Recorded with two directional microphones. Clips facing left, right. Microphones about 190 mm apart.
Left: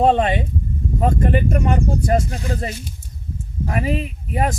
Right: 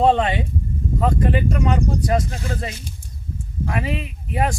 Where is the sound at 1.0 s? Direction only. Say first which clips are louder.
Left 1 dB; 45° left (ahead or behind).